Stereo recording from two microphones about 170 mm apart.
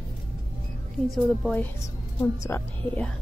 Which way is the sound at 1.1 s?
5° left (ahead or behind).